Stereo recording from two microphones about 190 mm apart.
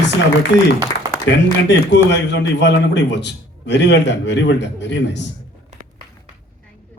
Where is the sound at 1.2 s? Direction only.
70° left (ahead or behind).